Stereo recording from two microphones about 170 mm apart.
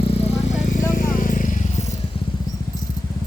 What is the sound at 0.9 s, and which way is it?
Vehicle, 55° left (ahead or behind).